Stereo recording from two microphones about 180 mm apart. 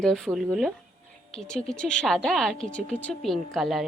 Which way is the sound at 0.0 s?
5° left (ahead or behind).